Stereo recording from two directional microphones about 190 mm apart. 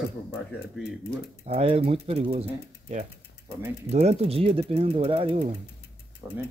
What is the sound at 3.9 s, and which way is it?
Speech, 35° right (ahead or behind).